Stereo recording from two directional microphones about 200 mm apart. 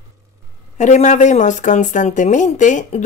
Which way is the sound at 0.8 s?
35° left (ahead or behind).